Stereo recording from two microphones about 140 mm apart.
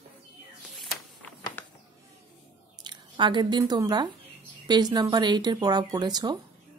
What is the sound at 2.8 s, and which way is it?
Speech, 35° right (ahead or behind).